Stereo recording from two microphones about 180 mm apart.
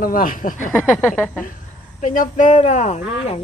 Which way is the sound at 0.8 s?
10° left (ahead or behind).